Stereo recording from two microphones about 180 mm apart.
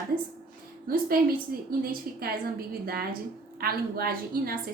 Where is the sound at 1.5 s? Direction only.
50° right (ahead or behind).